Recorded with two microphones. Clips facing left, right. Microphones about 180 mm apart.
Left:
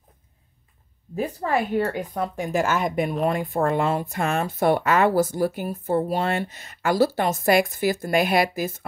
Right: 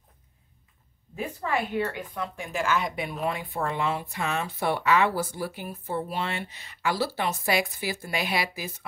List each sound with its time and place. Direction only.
1.1 s speech: 40° left (ahead or behind)